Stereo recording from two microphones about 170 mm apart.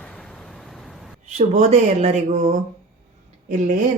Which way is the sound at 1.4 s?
40° right (ahead or behind).